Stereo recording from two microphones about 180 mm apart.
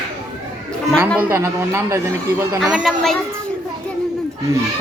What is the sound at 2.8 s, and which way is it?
Speech, centre (ahead or behind).